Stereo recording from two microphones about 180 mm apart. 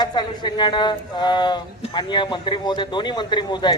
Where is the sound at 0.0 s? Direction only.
25° left (ahead or behind).